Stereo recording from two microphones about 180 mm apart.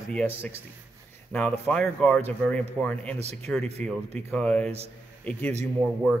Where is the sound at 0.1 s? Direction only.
10° left (ahead or behind).